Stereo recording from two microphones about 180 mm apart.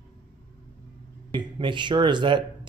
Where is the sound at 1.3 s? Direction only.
25° right (ahead or behind).